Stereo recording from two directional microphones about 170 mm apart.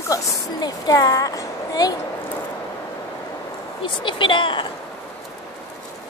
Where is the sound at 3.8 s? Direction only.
30° left (ahead or behind).